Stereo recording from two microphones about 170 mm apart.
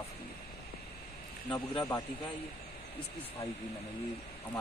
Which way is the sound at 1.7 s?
20° left (ahead or behind).